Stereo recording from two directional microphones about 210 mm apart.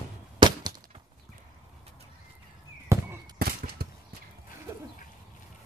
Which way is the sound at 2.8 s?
15° right (ahead or behind).